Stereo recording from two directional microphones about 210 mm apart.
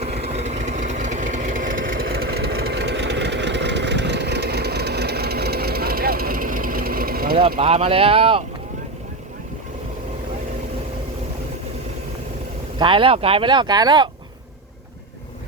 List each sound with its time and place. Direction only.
0.0 s vehicle: 30° right (ahead or behind)
1.9 s engine: 45° right (ahead or behind)
2.3 s vehicle: 50° right (ahead or behind)
7.6 s speech: 25° right (ahead or behind)
12.8 s speech: 25° right (ahead or behind)